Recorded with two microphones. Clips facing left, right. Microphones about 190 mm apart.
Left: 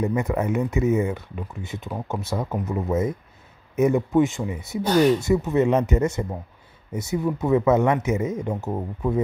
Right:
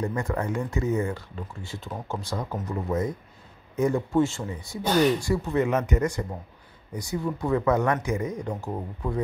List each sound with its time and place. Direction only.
0.0 s speech: 20° left (ahead or behind)